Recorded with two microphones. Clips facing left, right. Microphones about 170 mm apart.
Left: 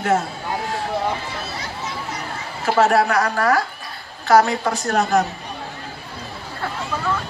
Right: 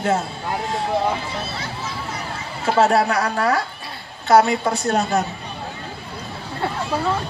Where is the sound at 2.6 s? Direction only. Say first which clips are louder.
Even; 25° right (ahead or behind).